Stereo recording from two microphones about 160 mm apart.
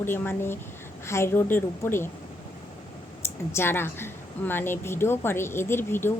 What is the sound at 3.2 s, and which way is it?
A woman's voice, 15° left (ahead or behind).